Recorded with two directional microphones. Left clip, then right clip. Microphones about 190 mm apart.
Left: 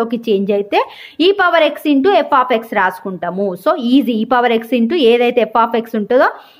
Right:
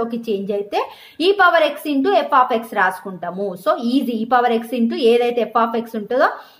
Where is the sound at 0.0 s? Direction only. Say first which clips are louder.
Left 6 dB; 35° left (ahead or behind).